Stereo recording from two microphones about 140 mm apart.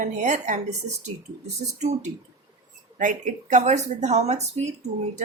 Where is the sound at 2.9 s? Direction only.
65° right (ahead or behind).